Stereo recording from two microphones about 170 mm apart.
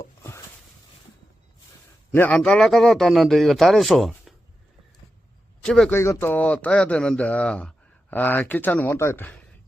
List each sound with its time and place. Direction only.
0.2 s a sound: 15° left (ahead or behind)
2.1 s a man's voice: 10° left (ahead or behind)
5.6 s a man's voice: 5° left (ahead or behind)
5.9 s speech: 15° left (ahead or behind)